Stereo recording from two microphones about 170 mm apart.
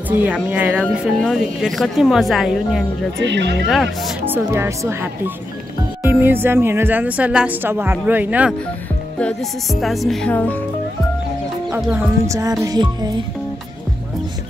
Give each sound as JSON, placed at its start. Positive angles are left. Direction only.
{"t": 0.2, "sound": "a woman's voice", "side_deg": -10}
{"t": 3.3, "sound": "speech", "side_deg": -90}
{"t": 3.6, "sound": "speech", "side_deg": 0}
{"t": 4.3, "sound": "a woman's voice", "side_deg": -15}
{"t": 11.7, "sound": "speech", "side_deg": -15}